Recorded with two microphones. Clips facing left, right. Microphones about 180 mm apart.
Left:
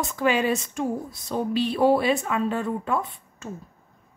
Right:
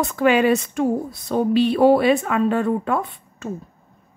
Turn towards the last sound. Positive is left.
turn(degrees=-60)  # may be behind; listen again after turning